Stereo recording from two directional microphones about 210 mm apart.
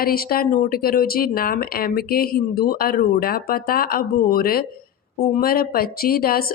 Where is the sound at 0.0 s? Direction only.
45° left (ahead or behind).